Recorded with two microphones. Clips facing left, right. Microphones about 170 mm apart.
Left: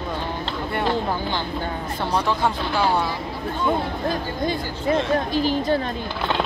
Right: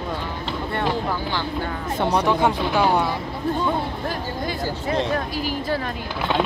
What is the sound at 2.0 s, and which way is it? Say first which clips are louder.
Speech: right 3 dB; 20° right (ahead or behind).